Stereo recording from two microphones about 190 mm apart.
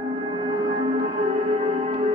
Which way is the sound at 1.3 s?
25° right (ahead or behind).